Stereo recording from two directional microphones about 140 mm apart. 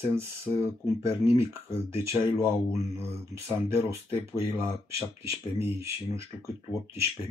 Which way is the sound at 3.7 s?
20° right (ahead or behind).